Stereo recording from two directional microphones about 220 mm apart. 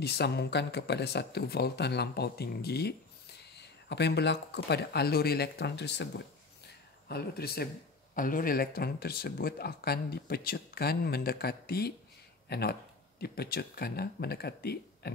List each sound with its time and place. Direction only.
0.0 s speech: 50° left (ahead or behind)